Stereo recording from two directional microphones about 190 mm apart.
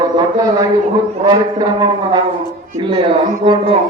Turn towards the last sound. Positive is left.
turn(degrees=-25)  # may be behind; listen again after turning